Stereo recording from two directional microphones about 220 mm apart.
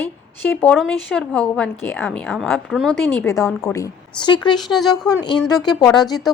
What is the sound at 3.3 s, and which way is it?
A woman's voice, 15° left (ahead or behind).